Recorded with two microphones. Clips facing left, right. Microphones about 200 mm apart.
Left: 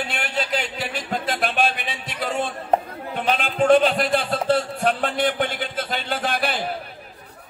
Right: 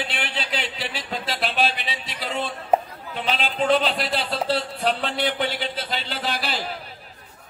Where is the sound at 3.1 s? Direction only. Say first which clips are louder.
Left 3 dB; 50° left (ahead or behind).